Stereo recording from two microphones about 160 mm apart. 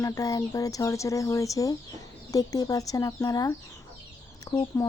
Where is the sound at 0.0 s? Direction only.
20° left (ahead or behind).